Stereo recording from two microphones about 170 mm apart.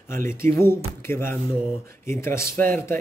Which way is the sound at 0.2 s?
15° left (ahead or behind).